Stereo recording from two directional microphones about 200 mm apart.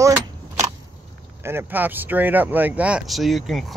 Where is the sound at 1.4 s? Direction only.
10° right (ahead or behind).